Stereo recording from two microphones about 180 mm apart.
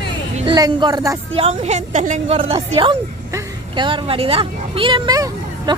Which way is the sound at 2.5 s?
30° right (ahead or behind).